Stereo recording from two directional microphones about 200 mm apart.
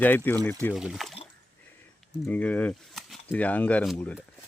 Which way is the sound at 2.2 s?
5° left (ahead or behind).